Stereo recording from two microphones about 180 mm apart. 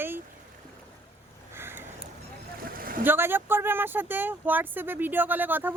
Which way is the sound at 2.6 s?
50° right (ahead or behind).